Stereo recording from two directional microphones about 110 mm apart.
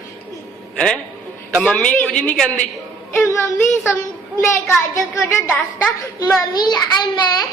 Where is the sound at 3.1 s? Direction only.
25° left (ahead or behind).